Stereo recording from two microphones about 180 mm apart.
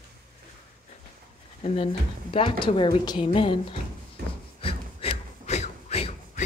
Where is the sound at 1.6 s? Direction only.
30° left (ahead or behind).